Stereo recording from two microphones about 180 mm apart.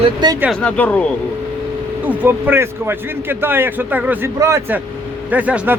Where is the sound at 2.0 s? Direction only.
10° right (ahead or behind).